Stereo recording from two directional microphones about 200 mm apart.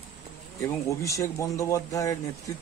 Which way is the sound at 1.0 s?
15° left (ahead or behind).